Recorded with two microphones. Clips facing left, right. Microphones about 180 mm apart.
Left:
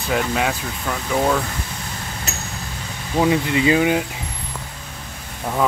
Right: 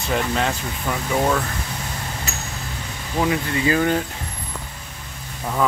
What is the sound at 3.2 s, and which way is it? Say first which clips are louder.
Speech: left 4 dB; 20° left (ahead or behind).